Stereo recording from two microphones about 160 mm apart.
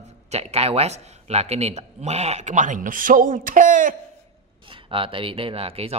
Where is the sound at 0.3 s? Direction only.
40° right (ahead or behind).